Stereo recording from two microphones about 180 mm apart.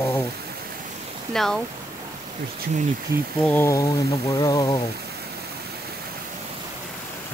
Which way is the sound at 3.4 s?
15° left (ahead or behind).